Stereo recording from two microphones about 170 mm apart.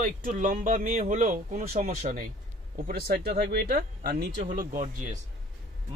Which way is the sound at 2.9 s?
65° right (ahead or behind).